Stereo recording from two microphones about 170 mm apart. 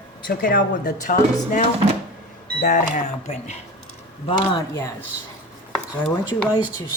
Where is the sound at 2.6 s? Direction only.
50° left (ahead or behind).